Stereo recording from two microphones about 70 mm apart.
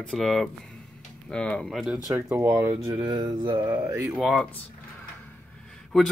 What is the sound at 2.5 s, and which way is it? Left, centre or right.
Speech, right.